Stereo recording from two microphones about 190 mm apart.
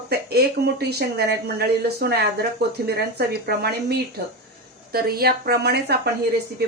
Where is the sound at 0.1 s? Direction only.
55° right (ahead or behind).